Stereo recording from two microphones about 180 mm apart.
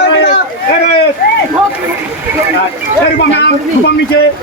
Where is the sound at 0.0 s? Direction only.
75° left (ahead or behind).